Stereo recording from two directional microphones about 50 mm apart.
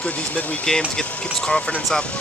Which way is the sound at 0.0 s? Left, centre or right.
Left.